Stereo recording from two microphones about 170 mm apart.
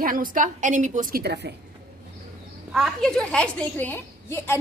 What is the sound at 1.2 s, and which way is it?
Speech, 80° right.